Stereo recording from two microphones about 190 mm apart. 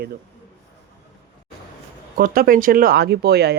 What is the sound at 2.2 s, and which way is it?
A man's voice, 50° right (ahead or behind).